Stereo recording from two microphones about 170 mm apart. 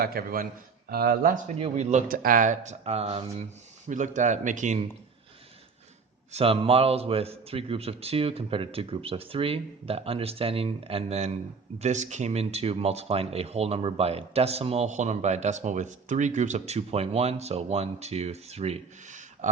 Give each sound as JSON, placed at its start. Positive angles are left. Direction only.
{"t": 0.0, "sound": "speech", "side_deg": -65}
{"t": 1.5, "sound": "speech", "side_deg": -35}
{"t": 3.8, "sound": "speech", "side_deg": -45}
{"t": 6.3, "sound": "speech", "side_deg": -35}